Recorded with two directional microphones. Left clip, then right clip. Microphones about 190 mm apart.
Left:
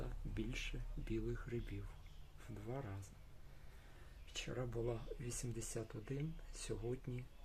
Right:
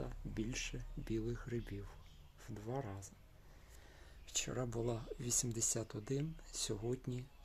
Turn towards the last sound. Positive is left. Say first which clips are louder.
# right 4 dB
turn(degrees=-50)  # may be behind; listen again after turning